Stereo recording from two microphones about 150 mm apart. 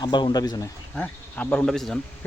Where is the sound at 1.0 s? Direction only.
10° left (ahead or behind).